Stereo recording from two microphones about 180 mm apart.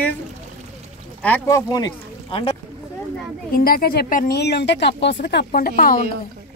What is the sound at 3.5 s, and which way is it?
A woman's voice, 55° left (ahead or behind).